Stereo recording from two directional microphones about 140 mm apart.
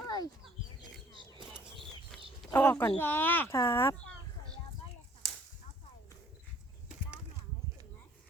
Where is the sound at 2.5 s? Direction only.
15° left (ahead or behind).